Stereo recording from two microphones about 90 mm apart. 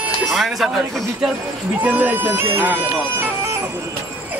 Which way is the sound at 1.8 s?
20° right (ahead or behind).